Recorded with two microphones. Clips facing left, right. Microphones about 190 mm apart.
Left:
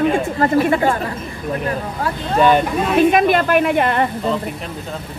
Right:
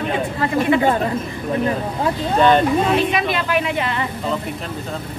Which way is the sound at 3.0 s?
50° left (ahead or behind).